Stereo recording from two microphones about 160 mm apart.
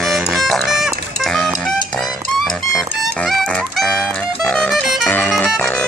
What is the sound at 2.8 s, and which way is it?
Music, centre (ahead or behind).